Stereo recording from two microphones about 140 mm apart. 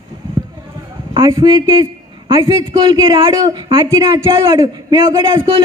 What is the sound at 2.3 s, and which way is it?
A man's voice, 30° right (ahead or behind).